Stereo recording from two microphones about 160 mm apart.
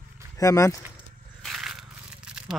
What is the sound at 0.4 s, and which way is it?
Speech, 20° left (ahead or behind).